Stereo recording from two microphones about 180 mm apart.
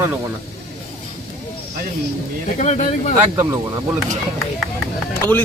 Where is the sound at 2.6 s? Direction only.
40° left (ahead or behind).